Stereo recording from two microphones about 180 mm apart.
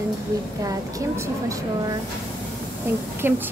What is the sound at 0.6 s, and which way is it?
Speech, 20° right (ahead or behind).